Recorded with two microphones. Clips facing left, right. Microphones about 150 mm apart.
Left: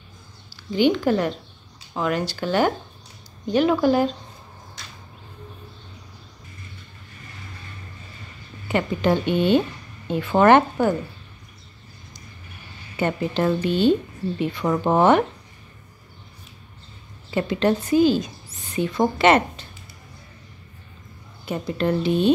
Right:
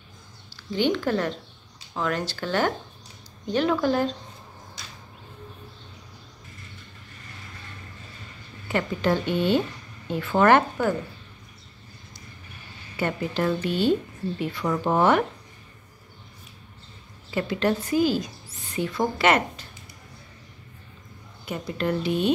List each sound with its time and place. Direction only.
0.7 s speech: 15° left (ahead or behind)
8.6 s a woman's voice: 20° left (ahead or behind)
12.9 s a woman's voice: 25° left (ahead or behind)
17.3 s a woman's voice: 25° left (ahead or behind)
21.5 s a woman's voice: 30° left (ahead or behind)